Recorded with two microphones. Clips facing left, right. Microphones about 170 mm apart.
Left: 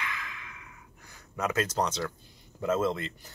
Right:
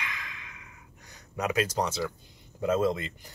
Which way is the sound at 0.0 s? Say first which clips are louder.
Left 2 dB; 20° right (ahead or behind).